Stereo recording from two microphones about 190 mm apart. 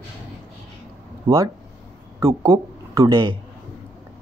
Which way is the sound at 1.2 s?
20° right (ahead or behind).